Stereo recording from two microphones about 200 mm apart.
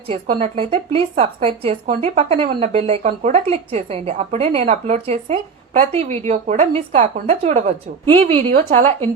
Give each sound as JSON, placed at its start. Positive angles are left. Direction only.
{"t": 0.1, "sound": "a woman's voice", "side_deg": -30}